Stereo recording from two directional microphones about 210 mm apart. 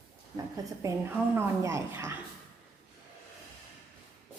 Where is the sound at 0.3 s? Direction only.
15° right (ahead or behind).